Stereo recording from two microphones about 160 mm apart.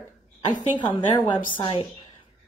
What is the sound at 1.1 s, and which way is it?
Speech, 30° left (ahead or behind).